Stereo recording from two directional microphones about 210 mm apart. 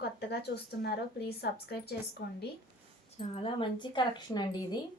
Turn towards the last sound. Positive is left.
turn(degrees=20)  # may be behind; listen again after turning